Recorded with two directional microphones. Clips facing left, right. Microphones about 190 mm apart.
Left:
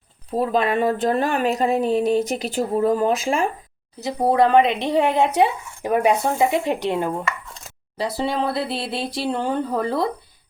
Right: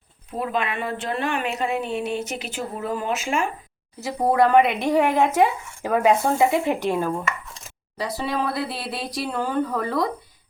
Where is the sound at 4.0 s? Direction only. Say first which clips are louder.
Left 2 dB; 20° left (ahead or behind).